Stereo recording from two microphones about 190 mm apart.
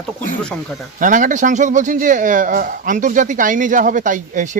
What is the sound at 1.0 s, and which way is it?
Speech, 45° right (ahead or behind).